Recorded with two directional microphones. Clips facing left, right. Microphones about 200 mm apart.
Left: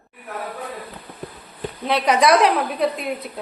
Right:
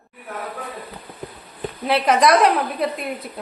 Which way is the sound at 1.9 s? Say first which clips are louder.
Even; centre (ahead or behind).